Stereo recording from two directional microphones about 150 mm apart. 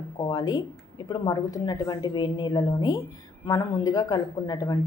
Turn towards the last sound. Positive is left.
turn(degrees=25)  # may be behind; listen again after turning